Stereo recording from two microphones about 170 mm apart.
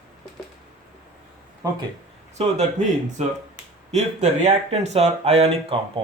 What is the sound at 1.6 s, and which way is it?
Speech, 20° right (ahead or behind).